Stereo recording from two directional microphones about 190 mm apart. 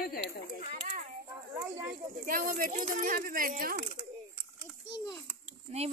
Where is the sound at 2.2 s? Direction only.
45° right (ahead or behind).